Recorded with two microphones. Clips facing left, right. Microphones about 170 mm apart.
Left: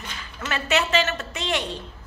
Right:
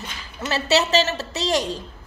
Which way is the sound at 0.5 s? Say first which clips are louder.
Right 4 dB; 35° right (ahead or behind).